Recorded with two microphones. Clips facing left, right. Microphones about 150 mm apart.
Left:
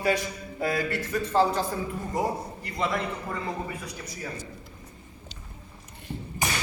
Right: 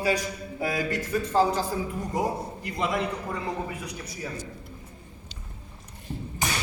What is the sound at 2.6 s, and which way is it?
Speech, 10° right (ahead or behind).